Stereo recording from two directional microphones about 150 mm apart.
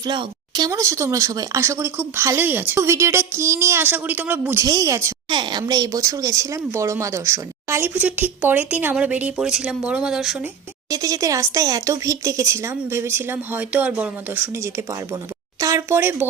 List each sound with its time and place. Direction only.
0.0 s speech: 30° right (ahead or behind); by 4.6 s 15° right (ahead or behind)
4.6 s a woman's voice: 25° right (ahead or behind)
5.3 s a woman's voice: 30° right (ahead or behind); by 10.4 s 5° right (ahead or behind)
10.4 s a woman's voice: 25° right (ahead or behind)